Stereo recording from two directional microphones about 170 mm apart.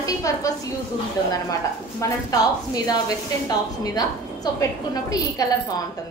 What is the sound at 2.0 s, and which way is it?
A woman's voice, 20° left (ahead or behind).